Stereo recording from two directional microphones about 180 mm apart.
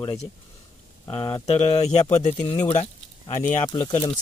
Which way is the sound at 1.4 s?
35° left (ahead or behind).